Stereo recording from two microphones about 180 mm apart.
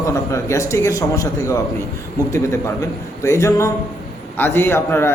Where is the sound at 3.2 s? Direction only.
15° left (ahead or behind).